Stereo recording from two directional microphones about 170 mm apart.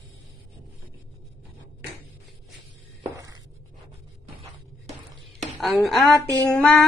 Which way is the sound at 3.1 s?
20° right (ahead or behind).